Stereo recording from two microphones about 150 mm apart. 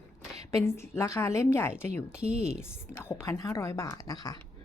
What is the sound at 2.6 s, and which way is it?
A woman's voice, 15° left (ahead or behind).